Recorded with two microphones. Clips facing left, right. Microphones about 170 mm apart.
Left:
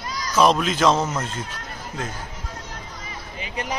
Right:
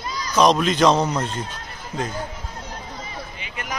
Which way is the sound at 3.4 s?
30° left (ahead or behind).